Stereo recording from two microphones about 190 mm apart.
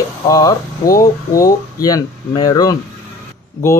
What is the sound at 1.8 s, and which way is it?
Speech, 20° left (ahead or behind).